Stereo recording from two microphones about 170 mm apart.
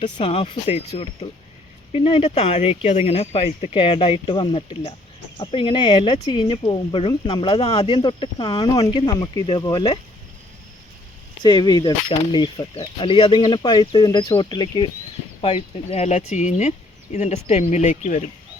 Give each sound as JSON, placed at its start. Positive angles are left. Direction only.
{"t": 0.0, "sound": "speech", "side_deg": 35}
{"t": 9.1, "sound": "speech", "side_deg": 20}
{"t": 11.4, "sound": "speech", "side_deg": 25}